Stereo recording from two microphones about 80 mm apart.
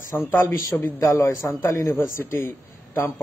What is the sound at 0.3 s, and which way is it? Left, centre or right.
Speech, left.